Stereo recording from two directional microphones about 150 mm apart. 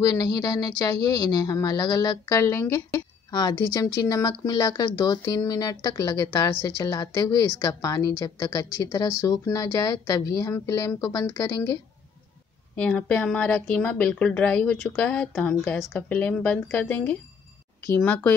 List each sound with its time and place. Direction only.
0.0 s speech: 25° left (ahead or behind)
12.7 s speech: 10° left (ahead or behind)